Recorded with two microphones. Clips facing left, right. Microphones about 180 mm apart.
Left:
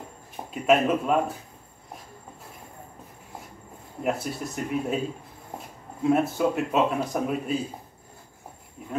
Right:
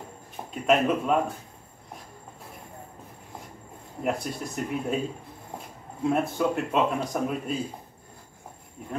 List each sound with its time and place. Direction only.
0.5 s speech: 5° left (ahead or behind)
4.0 s speech: 5° left (ahead or behind)
6.0 s speech: centre (ahead or behind)